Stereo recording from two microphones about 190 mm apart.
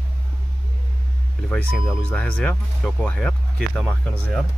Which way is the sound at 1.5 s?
5° left (ahead or behind).